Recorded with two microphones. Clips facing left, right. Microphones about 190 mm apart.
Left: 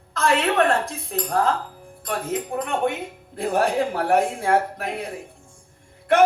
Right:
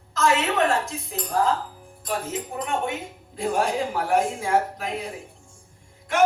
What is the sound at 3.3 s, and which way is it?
Speech, 60° left (ahead or behind).